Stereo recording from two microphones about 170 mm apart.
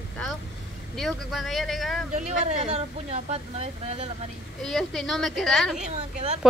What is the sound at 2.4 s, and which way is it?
Speech, 35° right (ahead or behind).